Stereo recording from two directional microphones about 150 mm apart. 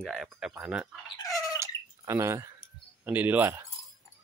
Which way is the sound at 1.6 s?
20° right (ahead or behind).